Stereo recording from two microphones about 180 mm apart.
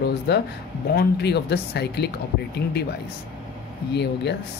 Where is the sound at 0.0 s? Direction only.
65° left (ahead or behind).